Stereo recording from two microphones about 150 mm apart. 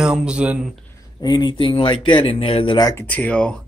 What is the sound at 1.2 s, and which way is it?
Speech, 30° left (ahead or behind).